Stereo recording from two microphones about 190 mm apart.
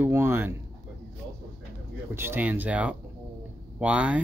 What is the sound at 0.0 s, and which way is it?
Speech, 10° right (ahead or behind).